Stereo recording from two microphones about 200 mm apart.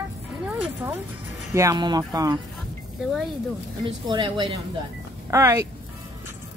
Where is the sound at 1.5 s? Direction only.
15° right (ahead or behind).